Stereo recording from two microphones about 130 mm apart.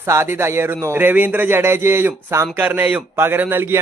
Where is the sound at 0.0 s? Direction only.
20° right (ahead or behind).